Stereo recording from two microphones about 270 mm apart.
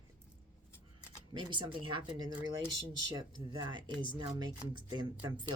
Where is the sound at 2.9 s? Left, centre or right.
Centre.